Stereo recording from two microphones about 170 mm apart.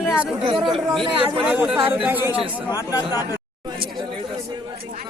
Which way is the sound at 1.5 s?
10° right (ahead or behind).